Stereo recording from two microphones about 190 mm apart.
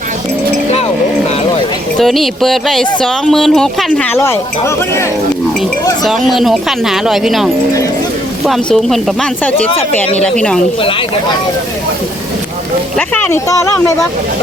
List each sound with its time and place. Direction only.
2.0 s speech: centre (ahead or behind)
6.1 s speech: centre (ahead or behind)
10.8 s speech: 30° left (ahead or behind)
13.0 s speech: 10° left (ahead or behind)